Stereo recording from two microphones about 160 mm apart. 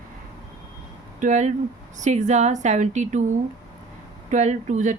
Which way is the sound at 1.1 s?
50° right (ahead or behind).